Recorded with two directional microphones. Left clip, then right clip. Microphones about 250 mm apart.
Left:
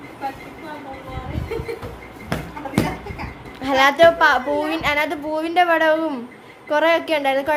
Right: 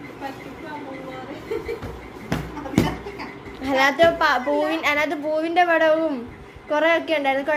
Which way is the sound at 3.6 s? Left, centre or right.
Centre.